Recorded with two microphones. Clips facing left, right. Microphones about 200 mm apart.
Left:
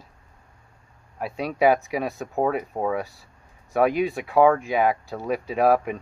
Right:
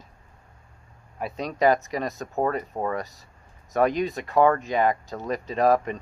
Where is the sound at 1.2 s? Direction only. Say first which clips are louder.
Left 2 dB; 5° left (ahead or behind).